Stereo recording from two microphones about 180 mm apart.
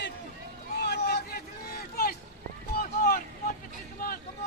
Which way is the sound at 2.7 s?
55° left (ahead or behind).